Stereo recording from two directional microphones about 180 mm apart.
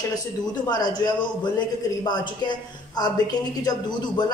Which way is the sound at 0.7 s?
20° left (ahead or behind).